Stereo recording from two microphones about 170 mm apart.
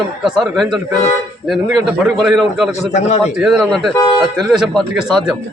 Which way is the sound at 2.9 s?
40° left (ahead or behind).